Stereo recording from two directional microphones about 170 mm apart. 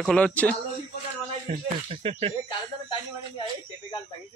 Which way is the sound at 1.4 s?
35° right (ahead or behind).